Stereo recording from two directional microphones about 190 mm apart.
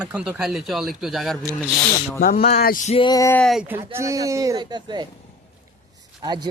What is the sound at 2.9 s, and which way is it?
Speech, 20° left (ahead or behind).